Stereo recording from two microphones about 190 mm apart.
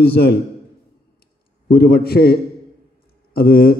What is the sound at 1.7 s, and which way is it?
Speech, 55° left (ahead or behind).